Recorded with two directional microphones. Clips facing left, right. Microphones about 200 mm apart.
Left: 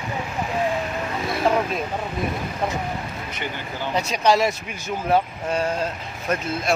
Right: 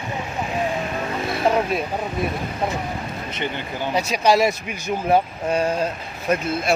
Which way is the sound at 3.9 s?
10° right (ahead or behind).